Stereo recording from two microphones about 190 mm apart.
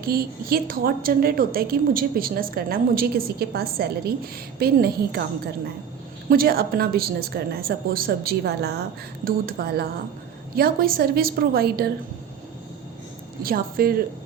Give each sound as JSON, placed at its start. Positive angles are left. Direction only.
{"t": 0.0, "sound": "a woman's voice", "side_deg": -50}
{"t": 6.2, "sound": "a woman's voice", "side_deg": -50}
{"t": 13.4, "sound": "a woman's voice", "side_deg": -50}